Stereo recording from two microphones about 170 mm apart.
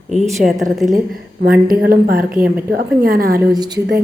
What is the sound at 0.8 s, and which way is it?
Speech, 50° right (ahead or behind).